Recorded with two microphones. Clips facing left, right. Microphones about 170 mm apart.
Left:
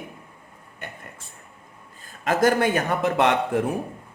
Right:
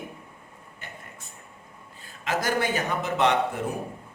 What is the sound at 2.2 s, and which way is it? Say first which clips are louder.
A man's voice: left 6 dB; 50° left (ahead or behind).